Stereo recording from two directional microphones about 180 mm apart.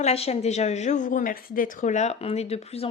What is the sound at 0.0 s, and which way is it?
A woman's voice, 35° left (ahead or behind).